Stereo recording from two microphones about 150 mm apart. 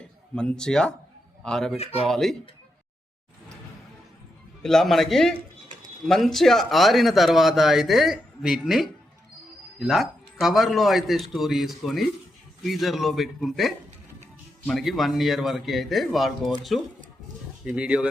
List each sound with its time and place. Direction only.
0.3 s speech: 5° left (ahead or behind)
1.8 s speech: 40° left (ahead or behind)
2.0 s speech: centre (ahead or behind)
4.6 s speech: 5° left (ahead or behind)